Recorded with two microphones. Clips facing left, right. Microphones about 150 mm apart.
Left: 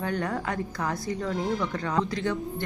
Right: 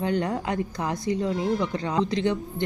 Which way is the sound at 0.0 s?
20° right (ahead or behind).